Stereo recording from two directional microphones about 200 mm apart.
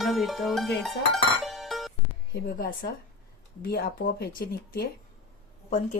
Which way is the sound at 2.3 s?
50° left (ahead or behind).